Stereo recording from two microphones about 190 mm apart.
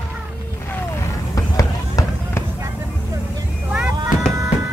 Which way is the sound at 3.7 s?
5° right (ahead or behind).